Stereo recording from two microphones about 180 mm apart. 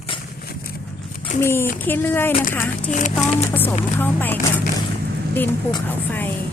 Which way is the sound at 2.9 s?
45° left (ahead or behind).